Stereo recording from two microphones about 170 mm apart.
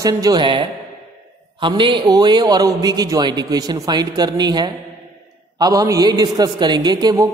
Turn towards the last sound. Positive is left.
turn(degrees=-25)  # may be behind; listen again after turning